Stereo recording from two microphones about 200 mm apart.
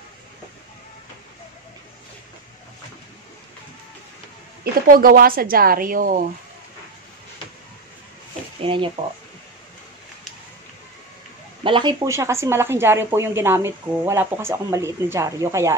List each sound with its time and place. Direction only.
4.8 s a woman's voice: 45° right (ahead or behind)
8.6 s speech: 25° right (ahead or behind)
11.6 s speech: 25° right (ahead or behind)